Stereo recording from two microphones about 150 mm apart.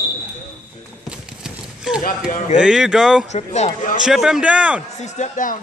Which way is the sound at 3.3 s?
50° left (ahead or behind).